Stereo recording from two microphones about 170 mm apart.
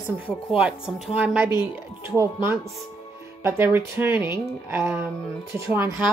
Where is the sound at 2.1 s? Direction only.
15° right (ahead or behind).